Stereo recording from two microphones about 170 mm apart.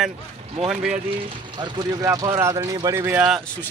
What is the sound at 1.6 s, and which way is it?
Speech, 25° right (ahead or behind).